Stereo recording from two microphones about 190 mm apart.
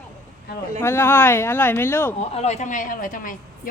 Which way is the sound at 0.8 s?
15° left (ahead or behind).